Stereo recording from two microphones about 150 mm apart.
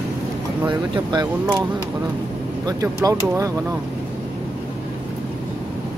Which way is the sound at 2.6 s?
25° right (ahead or behind).